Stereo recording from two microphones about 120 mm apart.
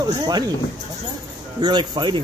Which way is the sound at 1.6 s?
40° right (ahead or behind).